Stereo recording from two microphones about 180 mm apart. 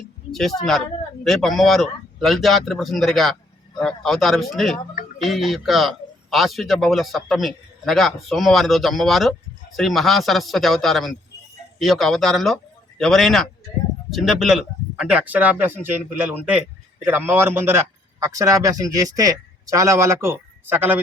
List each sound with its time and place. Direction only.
0.3 s a man's voice: centre (ahead or behind)